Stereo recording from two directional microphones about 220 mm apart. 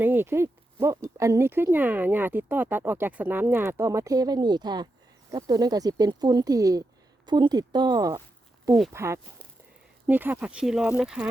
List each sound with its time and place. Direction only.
0.0 s speech: 10° right (ahead or behind)